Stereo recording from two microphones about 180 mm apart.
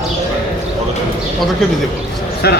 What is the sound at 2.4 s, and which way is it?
Speech, 65° left (ahead or behind).